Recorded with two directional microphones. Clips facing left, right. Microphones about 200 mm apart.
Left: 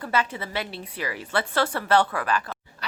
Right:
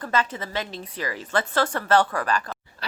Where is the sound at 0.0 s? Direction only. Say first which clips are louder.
Right 1 dB; 10° left (ahead or behind).